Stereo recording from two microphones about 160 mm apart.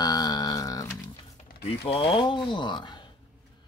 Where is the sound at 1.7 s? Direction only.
35° left (ahead or behind).